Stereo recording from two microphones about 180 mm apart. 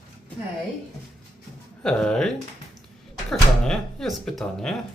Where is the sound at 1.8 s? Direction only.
5° left (ahead or behind).